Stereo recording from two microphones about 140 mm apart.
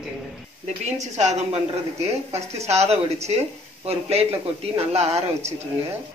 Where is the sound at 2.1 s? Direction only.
50° right (ahead or behind).